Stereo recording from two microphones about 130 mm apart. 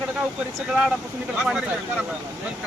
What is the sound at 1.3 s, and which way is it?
Speech, 5° right (ahead or behind).